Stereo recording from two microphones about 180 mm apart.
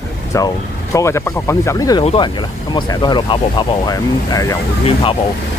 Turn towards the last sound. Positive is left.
turn(degrees=30)  # may be behind; listen again after turning